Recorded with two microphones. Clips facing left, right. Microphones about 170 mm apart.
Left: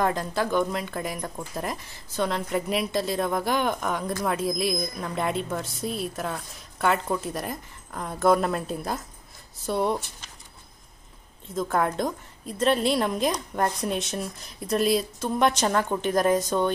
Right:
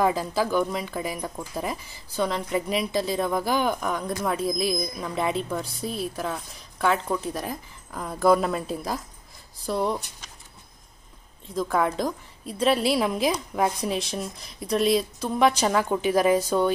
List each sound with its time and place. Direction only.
0.0 s a woman's voice: 5° right (ahead or behind)
11.5 s a woman's voice: centre (ahead or behind)